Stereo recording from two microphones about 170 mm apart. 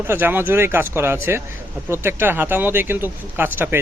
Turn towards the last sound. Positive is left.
turn(degrees=-10)  # may be behind; listen again after turning